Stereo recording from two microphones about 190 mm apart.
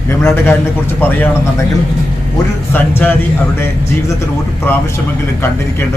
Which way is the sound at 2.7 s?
10° left (ahead or behind).